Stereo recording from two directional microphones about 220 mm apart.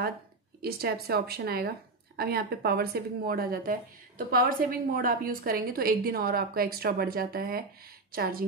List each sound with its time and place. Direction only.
0.6 s a woman's voice: 45° right (ahead or behind)